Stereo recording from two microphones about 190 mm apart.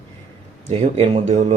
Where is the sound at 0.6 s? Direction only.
30° right (ahead or behind).